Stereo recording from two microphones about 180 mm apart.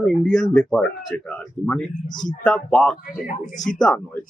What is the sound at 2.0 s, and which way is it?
Speech, 45° left (ahead or behind).